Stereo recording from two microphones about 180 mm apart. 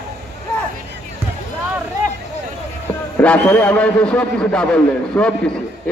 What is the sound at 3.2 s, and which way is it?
A man's voice, 10° left (ahead or behind).